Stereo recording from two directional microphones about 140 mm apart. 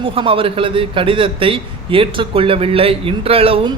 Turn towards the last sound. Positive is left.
turn(degrees=-40)  # may be behind; listen again after turning